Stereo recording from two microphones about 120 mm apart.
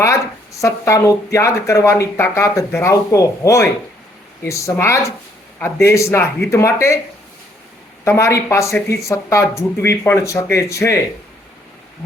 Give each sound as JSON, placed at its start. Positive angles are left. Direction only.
{"t": 0.0, "sound": "speech", "side_deg": 25}
{"t": 8.0, "sound": "speech", "side_deg": 25}